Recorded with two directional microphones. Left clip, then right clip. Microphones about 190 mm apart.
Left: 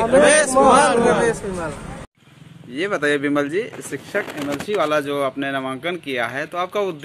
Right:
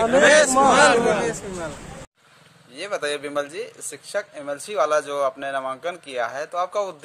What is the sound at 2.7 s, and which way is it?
Speech, 5° right (ahead or behind).